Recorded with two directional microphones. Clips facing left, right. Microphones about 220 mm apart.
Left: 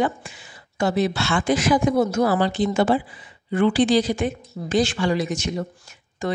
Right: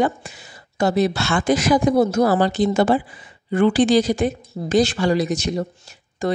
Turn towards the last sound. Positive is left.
turn(degrees=-35)  # may be behind; listen again after turning